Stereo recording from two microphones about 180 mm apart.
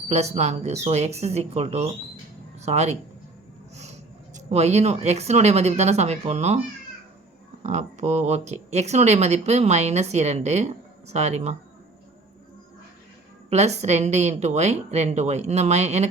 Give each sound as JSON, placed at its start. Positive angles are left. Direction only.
{"t": 0.1, "sound": "speech", "side_deg": -40}
{"t": 4.4, "sound": "speech", "side_deg": -35}
{"t": 7.6, "sound": "speech", "side_deg": -40}
{"t": 13.5, "sound": "speech", "side_deg": -40}